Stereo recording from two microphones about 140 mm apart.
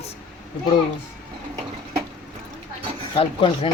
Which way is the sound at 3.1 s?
45° left (ahead or behind).